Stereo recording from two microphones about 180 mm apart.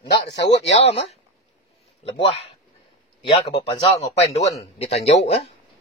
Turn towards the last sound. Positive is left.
turn(degrees=35)  # may be behind; listen again after turning